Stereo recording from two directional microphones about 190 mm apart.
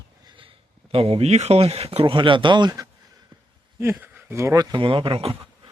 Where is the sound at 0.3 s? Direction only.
25° right (ahead or behind).